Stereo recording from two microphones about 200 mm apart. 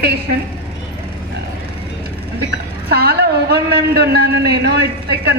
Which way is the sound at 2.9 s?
55° right (ahead or behind).